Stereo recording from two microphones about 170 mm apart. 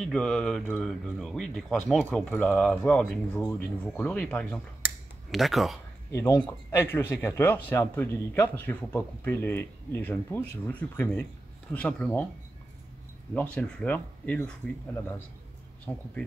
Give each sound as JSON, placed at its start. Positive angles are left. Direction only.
{"t": 0.0, "sound": "speech", "side_deg": 5}
{"t": 6.1, "sound": "speech", "side_deg": 15}
{"t": 13.3, "sound": "speech", "side_deg": 10}
{"t": 15.9, "sound": "speech", "side_deg": 10}